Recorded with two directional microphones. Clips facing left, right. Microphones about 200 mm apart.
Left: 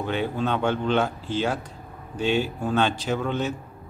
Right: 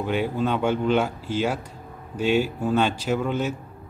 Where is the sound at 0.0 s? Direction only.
10° right (ahead or behind).